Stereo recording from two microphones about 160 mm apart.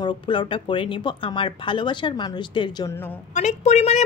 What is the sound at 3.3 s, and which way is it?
Speech, 45° left (ahead or behind).